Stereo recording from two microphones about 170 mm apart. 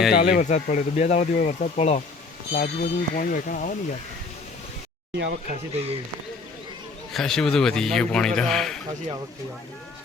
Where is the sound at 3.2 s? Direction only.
50° left (ahead or behind).